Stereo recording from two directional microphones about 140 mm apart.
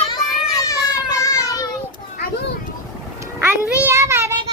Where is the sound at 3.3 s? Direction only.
15° right (ahead or behind).